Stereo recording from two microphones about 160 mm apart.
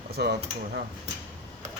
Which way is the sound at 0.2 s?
90° right.